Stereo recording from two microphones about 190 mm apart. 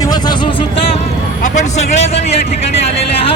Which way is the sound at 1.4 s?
40° left (ahead or behind).